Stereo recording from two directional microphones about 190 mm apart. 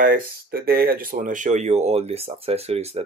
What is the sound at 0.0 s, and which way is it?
Speech, 50° right (ahead or behind).